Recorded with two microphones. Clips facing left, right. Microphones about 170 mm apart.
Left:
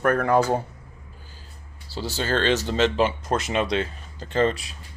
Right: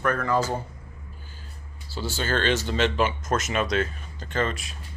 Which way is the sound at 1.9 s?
35° left (ahead or behind).